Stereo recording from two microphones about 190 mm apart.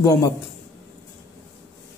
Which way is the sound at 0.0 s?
15° left (ahead or behind).